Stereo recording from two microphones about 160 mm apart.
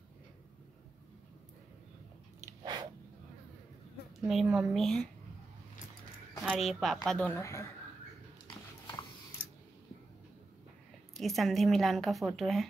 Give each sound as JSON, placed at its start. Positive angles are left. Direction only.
{"t": 2.4, "sound": "a sound", "side_deg": -25}
{"t": 4.2, "sound": "a woman's voice", "side_deg": 0}
{"t": 6.4, "sound": "a woman's voice", "side_deg": 0}
{"t": 7.3, "sound": "a woman's voice", "side_deg": 20}
{"t": 11.1, "sound": "a woman's voice", "side_deg": 0}